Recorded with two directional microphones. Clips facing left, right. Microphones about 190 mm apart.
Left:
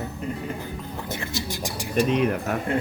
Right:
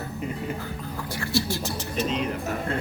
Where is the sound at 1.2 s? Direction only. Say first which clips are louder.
Right 8 dB; 15° left (ahead or behind).